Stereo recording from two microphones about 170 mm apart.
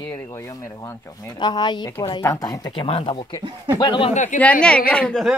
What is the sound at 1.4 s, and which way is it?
A man's voice, 25° left (ahead or behind).